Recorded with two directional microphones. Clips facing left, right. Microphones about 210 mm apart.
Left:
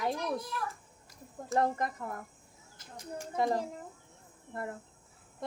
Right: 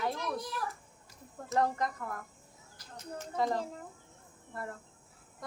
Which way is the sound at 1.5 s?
25° left (ahead or behind).